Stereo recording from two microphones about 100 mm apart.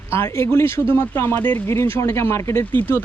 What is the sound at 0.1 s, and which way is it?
Speech, 25° left (ahead or behind).